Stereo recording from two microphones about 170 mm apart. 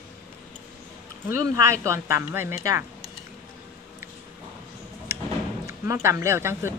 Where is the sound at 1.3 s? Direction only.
15° right (ahead or behind).